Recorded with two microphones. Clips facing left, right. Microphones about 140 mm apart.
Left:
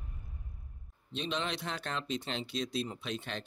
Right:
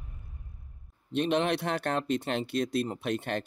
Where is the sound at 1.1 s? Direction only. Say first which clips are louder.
Right 9 dB; 60° right (ahead or behind).